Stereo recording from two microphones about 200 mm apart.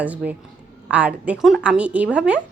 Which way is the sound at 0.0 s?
5° right (ahead or behind).